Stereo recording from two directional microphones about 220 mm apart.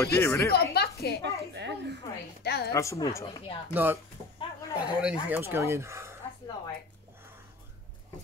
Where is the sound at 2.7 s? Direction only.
15° left (ahead or behind).